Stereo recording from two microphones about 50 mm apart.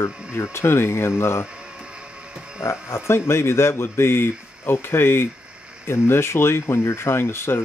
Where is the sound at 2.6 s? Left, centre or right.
Left.